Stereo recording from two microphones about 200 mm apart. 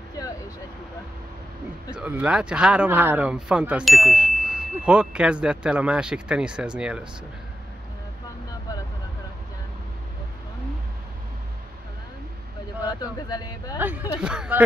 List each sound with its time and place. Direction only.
1.9 s speech: 5° right (ahead or behind)
13.0 s speech: 20° left (ahead or behind)
13.7 s speech: 10° right (ahead or behind)